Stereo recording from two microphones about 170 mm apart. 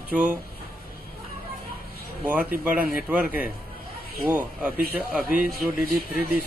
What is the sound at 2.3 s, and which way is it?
Speech, 10° right (ahead or behind).